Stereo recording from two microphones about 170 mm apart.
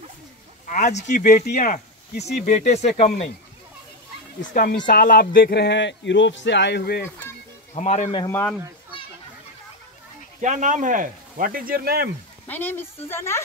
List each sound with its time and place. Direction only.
0.7 s speech: 50° left (ahead or behind)
4.6 s speech: 60° left (ahead or behind); by 7.1 s 85° left
7.7 s speech: 40° left (ahead or behind)
8.3 s a woman's voice: 15° left (ahead or behind)
10.4 s speech: 45° right (ahead or behind); by 12.1 s 65° right (ahead or behind)
12.4 s a woman's voice: 10° left (ahead or behind)